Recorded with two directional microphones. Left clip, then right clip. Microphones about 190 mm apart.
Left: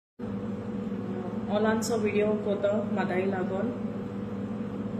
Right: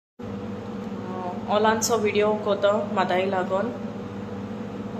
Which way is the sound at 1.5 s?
15° left (ahead or behind).